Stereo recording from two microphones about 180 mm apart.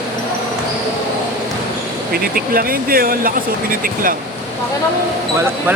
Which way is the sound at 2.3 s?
55° right (ahead or behind).